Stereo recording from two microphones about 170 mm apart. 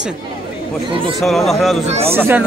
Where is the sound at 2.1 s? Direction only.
10° right (ahead or behind).